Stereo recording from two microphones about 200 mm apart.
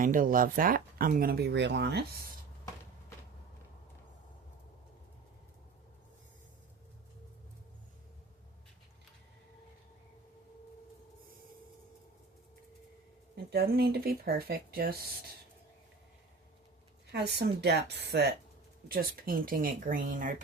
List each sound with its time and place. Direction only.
0.0 s speech: 40° right (ahead or behind)
13.3 s speech: 50° right (ahead or behind)
17.1 s a woman's voice: 55° right (ahead or behind); by 20.3 s 40° right (ahead or behind)